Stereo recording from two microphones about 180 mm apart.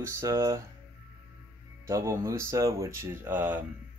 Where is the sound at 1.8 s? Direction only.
15° right (ahead or behind).